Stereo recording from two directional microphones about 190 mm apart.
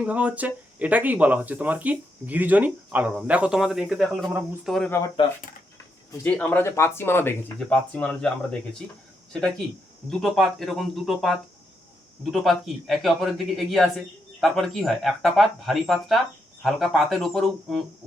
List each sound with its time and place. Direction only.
0.0 s a man's voice: 5° right (ahead or behind)
4.9 s speech: 15° left (ahead or behind)
6.2 s speech: 10° left (ahead or behind)
10.1 s a man's voice: centre (ahead or behind)